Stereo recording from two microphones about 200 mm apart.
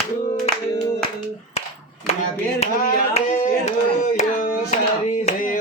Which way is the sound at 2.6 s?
35° left (ahead or behind).